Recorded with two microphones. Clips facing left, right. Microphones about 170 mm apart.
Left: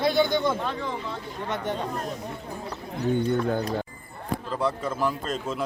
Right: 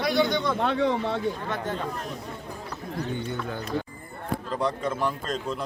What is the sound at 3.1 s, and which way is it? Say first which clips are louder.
Speech: left 12 dB; 50° left (ahead or behind).